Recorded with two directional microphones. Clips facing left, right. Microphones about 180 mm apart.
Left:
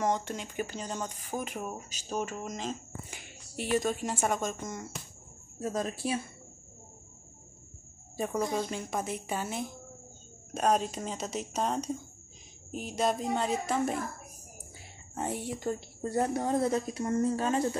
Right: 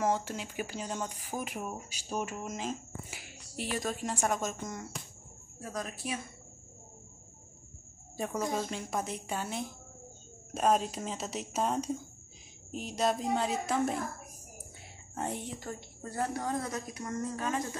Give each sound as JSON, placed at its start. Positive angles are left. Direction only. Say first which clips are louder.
{"t": 0.0, "sound": "speech", "louder": "left 1 dB", "side_deg": -5}
{"t": 5.6, "sound": "speech", "louder": "left 6 dB", "side_deg": 25}
{"t": 8.2, "sound": "speech", "louder": "left 2 dB", "side_deg": 0}
{"t": 14.8, "sound": "whispering", "louder": "left 1 dB", "side_deg": 5}
{"t": 16.0, "sound": "speech", "louder": "left 4 dB", "side_deg": 25}